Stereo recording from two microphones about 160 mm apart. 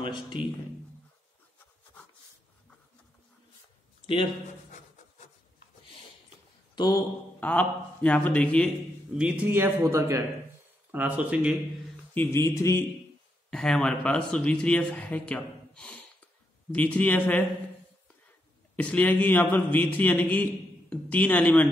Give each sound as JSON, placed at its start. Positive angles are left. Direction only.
{"t": 0.0, "sound": "a man's voice", "side_deg": 30}
{"t": 4.0, "sound": "a sound", "side_deg": 35}
{"t": 6.7, "sound": "a sound", "side_deg": 25}
{"t": 7.3, "sound": "a man's voice", "side_deg": 10}
{"t": 9.1, "sound": "a man's voice", "side_deg": -10}
{"t": 12.1, "sound": "a man's voice", "side_deg": 15}
{"t": 13.5, "sound": "a man's voice", "side_deg": 5}
{"t": 18.8, "sound": "a man's voice", "side_deg": 10}